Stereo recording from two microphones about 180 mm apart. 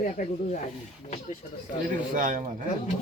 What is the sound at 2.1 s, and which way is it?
Speech, 50° right (ahead or behind).